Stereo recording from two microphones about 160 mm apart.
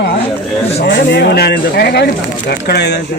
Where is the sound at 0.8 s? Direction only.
90° left.